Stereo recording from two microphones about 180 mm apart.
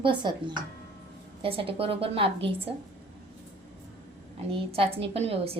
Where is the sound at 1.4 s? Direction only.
30° right (ahead or behind).